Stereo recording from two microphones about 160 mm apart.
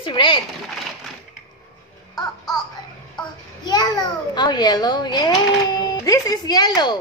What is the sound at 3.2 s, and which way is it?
A child's voice, 25° left (ahead or behind).